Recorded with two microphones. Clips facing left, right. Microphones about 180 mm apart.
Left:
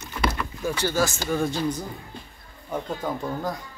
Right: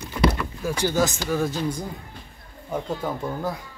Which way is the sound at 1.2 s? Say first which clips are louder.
Even; 5° right (ahead or behind).